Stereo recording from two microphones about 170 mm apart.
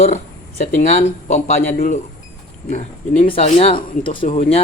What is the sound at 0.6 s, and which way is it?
Speech, 40° left (ahead or behind).